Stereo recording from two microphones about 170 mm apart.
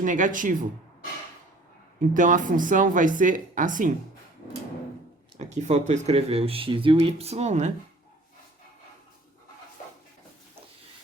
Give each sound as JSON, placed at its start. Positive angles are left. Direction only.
{"t": 0.0, "sound": "speech", "side_deg": -50}
{"t": 2.0, "sound": "speech", "side_deg": -50}
{"t": 5.4, "sound": "speech", "side_deg": -45}